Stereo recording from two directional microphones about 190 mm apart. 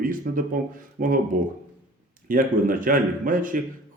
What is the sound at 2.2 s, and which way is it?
Speech, 45° right (ahead or behind).